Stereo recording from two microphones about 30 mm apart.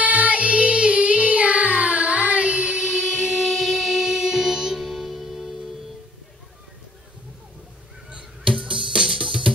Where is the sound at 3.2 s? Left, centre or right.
Centre.